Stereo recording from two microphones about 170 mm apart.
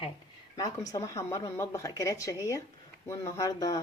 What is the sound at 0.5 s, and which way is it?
Speech, 20° left (ahead or behind).